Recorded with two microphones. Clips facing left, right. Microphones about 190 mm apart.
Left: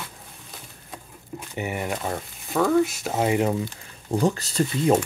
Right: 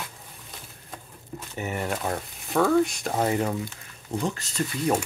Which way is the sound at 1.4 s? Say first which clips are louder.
Left 2 dB; 15° left (ahead or behind).